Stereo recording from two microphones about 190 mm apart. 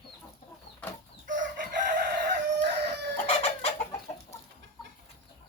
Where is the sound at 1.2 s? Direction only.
45° right (ahead or behind).